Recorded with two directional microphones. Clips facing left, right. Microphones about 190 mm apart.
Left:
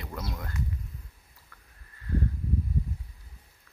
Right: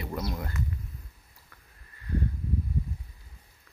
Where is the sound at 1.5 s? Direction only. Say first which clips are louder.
Even; 15° right (ahead or behind).